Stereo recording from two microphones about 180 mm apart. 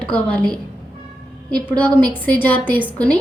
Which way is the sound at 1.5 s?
5° left (ahead or behind).